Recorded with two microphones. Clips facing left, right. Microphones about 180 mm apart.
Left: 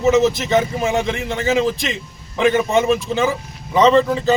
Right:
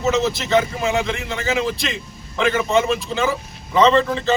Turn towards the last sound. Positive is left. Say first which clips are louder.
# left 3 dB
turn(degrees=10)  # may be behind; listen again after turning